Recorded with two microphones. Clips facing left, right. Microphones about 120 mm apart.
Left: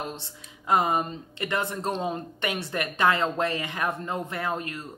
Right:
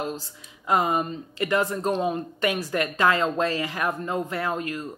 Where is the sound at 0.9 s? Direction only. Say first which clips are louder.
Right 2 dB; 35° right (ahead or behind).